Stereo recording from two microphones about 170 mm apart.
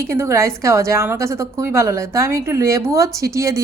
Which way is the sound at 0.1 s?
15° right (ahead or behind).